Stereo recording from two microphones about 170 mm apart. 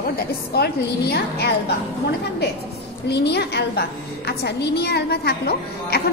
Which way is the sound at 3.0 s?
80° left.